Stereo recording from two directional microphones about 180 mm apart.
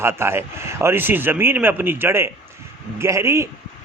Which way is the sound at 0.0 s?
15° right (ahead or behind).